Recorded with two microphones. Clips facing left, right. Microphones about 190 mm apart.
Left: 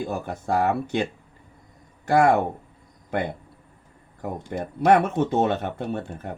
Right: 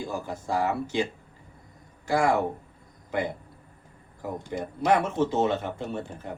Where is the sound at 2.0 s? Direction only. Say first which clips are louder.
Left 5 dB; 60° left (ahead or behind).